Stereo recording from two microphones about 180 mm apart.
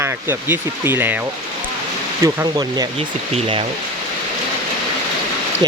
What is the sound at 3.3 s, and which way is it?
Speech, 30° right (ahead or behind).